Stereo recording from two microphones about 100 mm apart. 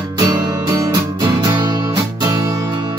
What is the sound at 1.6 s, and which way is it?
Music, 45° right (ahead or behind).